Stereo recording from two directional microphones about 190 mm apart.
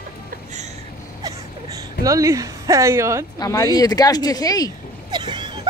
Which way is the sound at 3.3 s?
20° left (ahead or behind).